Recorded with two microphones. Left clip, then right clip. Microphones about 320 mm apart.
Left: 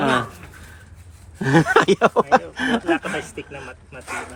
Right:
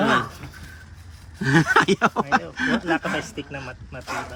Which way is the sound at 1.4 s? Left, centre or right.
Centre.